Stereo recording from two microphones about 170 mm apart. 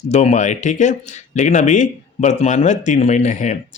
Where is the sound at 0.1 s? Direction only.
40° left (ahead or behind).